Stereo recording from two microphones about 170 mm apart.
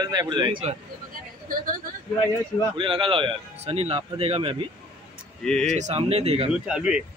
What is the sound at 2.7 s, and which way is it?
Speech, 30° right (ahead or behind).